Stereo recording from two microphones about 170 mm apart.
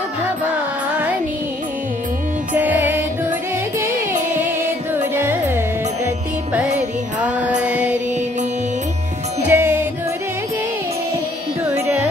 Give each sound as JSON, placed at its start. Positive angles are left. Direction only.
{"t": 2.5, "sound": "music", "side_deg": -10}
{"t": 4.4, "sound": "music", "side_deg": -10}
{"t": 7.2, "sound": "music", "side_deg": -10}
{"t": 7.6, "sound": "mantra", "side_deg": -10}
{"t": 9.5, "sound": "music", "side_deg": -15}
{"t": 11.6, "sound": "carnatic music", "side_deg": -15}